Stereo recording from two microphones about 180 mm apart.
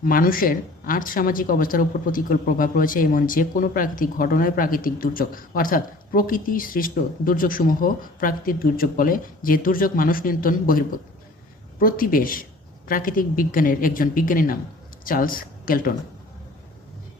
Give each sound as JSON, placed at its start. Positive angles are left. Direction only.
{"t": 0.0, "sound": "speech", "side_deg": 50}